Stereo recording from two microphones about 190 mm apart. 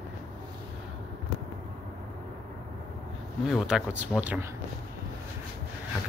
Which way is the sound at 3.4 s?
Centre (ahead or behind).